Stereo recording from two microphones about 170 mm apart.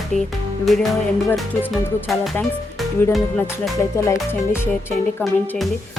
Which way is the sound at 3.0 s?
15° left (ahead or behind).